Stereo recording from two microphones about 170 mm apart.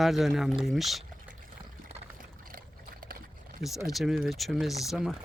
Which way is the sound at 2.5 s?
60° right (ahead or behind).